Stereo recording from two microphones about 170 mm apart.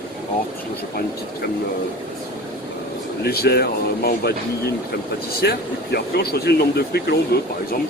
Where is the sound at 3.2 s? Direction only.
70° left (ahead or behind).